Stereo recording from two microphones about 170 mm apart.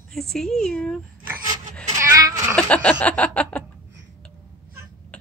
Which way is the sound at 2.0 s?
15° right (ahead or behind).